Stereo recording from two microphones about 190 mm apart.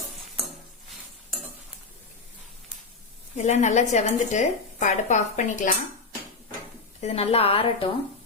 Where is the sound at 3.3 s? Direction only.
35° left (ahead or behind).